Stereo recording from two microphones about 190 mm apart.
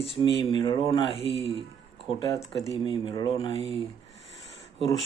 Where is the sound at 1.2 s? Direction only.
30° right (ahead or behind).